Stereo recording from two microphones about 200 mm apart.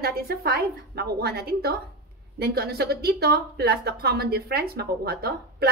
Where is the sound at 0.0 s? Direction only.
50° right (ahead or behind).